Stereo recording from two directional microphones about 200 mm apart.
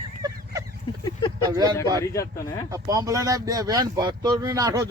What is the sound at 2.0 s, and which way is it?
Speech, 15° left (ahead or behind).